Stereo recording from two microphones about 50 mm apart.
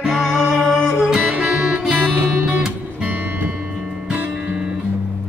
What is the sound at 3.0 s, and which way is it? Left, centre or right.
Music, right.